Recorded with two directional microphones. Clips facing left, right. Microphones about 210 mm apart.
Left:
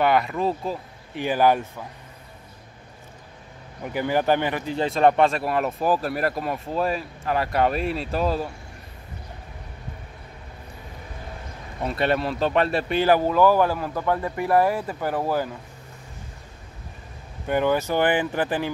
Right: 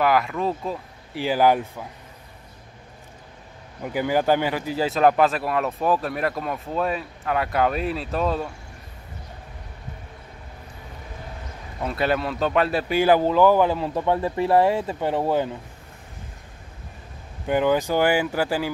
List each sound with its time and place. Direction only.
0.0 s speech: centre (ahead or behind)
1.2 s speech: 10° right (ahead or behind)
3.9 s speech: 10° right (ahead or behind)
11.8 s speech: centre (ahead or behind); by 15.5 s 25° right (ahead or behind)
17.5 s speech: 15° right (ahead or behind)